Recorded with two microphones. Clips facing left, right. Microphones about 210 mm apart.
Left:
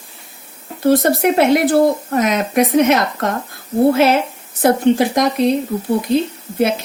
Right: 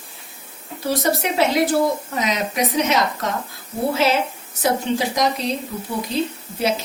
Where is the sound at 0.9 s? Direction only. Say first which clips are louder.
Left 8 dB; 55° left (ahead or behind).